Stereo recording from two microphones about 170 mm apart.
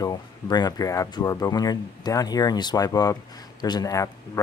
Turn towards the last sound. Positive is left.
turn(degrees=20)  # may be behind; listen again after turning